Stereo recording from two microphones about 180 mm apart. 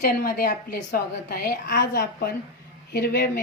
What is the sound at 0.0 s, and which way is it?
A woman's voice, 55° left (ahead or behind).